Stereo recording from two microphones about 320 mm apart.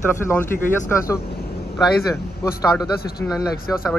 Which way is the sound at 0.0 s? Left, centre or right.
Centre.